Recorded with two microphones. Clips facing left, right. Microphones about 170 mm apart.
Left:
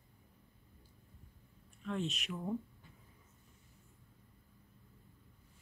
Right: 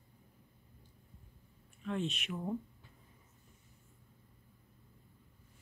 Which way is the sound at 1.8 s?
Centre (ahead or behind).